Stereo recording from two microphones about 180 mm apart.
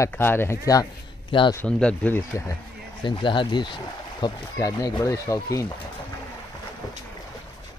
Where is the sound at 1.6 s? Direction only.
5° left (ahead or behind).